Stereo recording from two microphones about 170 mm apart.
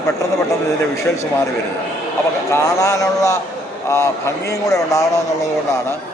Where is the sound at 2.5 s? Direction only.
20° left (ahead or behind).